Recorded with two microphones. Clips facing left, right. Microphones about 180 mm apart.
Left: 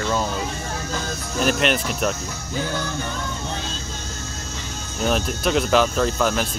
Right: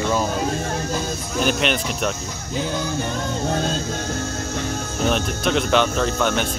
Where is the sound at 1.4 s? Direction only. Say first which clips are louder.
Left 1 dB; centre (ahead or behind).